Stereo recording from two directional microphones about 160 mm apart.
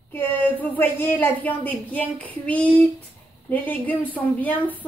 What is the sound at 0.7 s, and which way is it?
A woman's voice, 10° left (ahead or behind).